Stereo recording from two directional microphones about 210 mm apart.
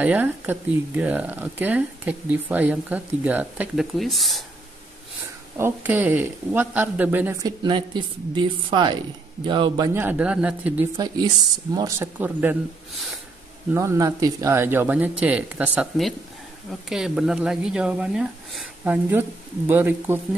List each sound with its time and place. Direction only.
0.0 s speech: 10° right (ahead or behind)
5.6 s a man's voice: 10° right (ahead or behind)
9.9 s speech: 10° right (ahead or behind)
11.0 s speech: 20° right (ahead or behind)
13.7 s speech: 15° right (ahead or behind)